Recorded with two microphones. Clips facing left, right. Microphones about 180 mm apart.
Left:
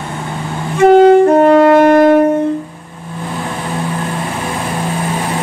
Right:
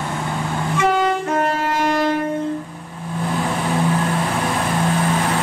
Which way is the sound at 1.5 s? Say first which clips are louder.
Left 13 dB; 60° left (ahead or behind).